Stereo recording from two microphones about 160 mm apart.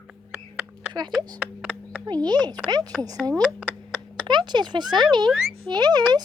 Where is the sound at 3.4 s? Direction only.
5° right (ahead or behind).